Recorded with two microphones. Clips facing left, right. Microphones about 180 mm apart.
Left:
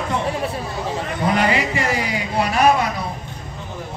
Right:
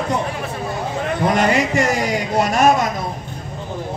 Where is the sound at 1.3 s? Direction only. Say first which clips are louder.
Right 3 dB; 45° right (ahead or behind).